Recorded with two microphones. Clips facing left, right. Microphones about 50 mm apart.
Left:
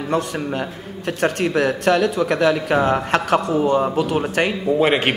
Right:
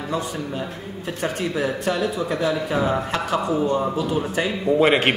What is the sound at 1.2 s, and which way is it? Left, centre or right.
A man's voice, left.